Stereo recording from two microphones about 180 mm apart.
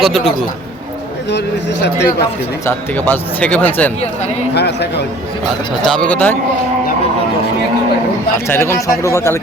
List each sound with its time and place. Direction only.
0.0 s a man's voice: centre (ahead or behind)
1.3 s a man's voice: 70° left (ahead or behind)
2.6 s speech: 10° left (ahead or behind)
4.5 s a man's voice: 65° left (ahead or behind)
5.8 s speech: 5° left (ahead or behind)
8.4 s speech: 15° left (ahead or behind)